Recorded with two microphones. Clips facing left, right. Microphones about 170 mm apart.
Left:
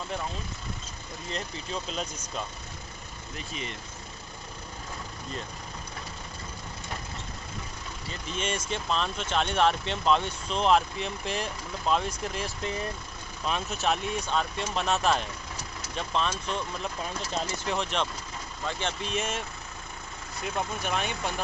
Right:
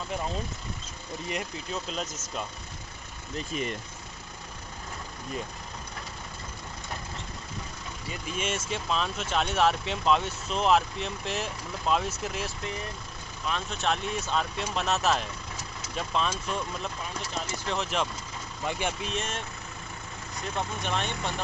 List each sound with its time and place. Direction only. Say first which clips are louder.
1.3 s speech: even; 5° right (ahead or behind)
3.3 s speech: right 6 dB; 45° right (ahead or behind)
8.1 s speech: even; 5° right (ahead or behind)
13.5 s speech: left 1 dB; 15° left (ahead or behind)
20.5 s speech: even; 5° left (ahead or behind)